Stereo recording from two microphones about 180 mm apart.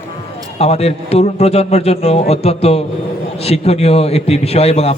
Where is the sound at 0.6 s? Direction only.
35° left (ahead or behind).